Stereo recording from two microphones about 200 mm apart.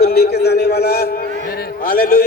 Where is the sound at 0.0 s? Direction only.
50° left (ahead or behind).